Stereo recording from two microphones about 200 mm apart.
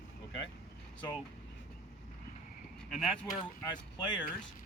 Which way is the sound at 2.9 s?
Centre (ahead or behind).